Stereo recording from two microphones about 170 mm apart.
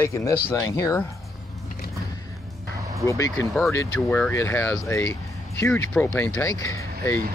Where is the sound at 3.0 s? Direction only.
15° left (ahead or behind).